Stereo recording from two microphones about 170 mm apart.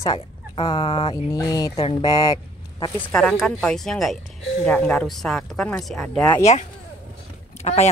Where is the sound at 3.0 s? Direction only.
5° left (ahead or behind).